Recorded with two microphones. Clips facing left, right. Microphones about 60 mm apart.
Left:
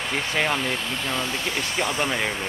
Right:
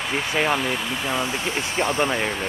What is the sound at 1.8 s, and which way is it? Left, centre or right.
Speech, right.